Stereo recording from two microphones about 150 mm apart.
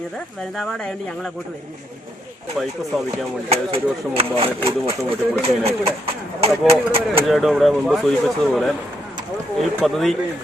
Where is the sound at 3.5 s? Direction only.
40° right (ahead or behind).